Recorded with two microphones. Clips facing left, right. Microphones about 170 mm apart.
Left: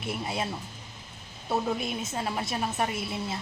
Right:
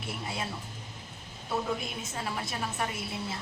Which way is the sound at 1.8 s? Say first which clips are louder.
Left 5 dB; 20° left (ahead or behind).